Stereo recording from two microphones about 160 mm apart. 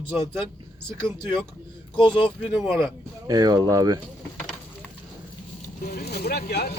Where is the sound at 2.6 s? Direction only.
Centre (ahead or behind).